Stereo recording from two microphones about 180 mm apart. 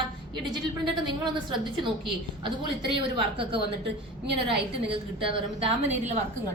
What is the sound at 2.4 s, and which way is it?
A woman's voice, 30° right (ahead or behind).